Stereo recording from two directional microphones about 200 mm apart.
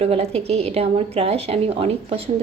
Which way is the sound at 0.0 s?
30° right (ahead or behind).